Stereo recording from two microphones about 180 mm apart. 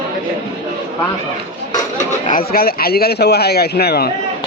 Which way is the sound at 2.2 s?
50° left (ahead or behind).